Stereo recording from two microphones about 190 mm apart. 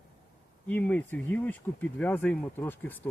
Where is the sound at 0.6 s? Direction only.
10° left (ahead or behind).